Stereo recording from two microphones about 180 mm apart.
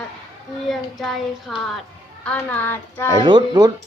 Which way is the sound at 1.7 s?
5° left (ahead or behind).